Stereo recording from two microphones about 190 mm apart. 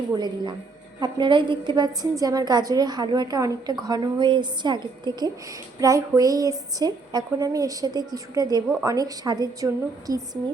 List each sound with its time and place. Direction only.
0.1 s a woman's voice: 20° right (ahead or behind)